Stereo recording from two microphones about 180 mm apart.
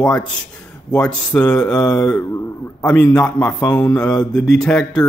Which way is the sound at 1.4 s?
20° left (ahead or behind).